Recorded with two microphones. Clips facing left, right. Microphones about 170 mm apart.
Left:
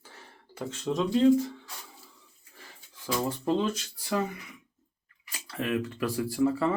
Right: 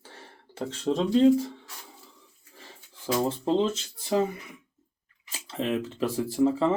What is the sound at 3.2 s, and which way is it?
Speech, 25° right (ahead or behind).